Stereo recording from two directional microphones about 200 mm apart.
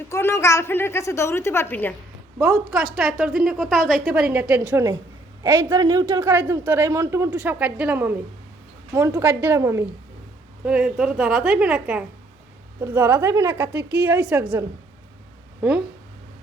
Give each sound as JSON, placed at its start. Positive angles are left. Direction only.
{"t": 0.1, "sound": "a woman's voice", "side_deg": 15}
{"t": 2.4, "sound": "a woman's voice", "side_deg": 0}
{"t": 10.7, "sound": "a woman's voice", "side_deg": 0}